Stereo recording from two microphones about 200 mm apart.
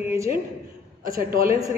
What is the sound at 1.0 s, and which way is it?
Speech, 45° right (ahead or behind).